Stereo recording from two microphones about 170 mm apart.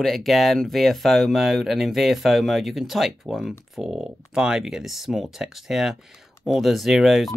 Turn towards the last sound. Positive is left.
turn(degrees=0)  # may be behind; listen again after turning